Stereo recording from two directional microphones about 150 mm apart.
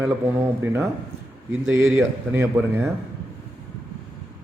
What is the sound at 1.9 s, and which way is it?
Speech, 15° right (ahead or behind).